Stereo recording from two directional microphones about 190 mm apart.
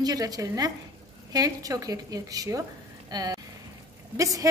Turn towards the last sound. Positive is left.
turn(degrees=-20)  # may be behind; listen again after turning